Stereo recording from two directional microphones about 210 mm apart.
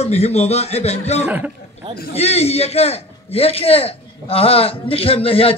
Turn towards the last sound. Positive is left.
turn(degrees=25)  # may be behind; listen again after turning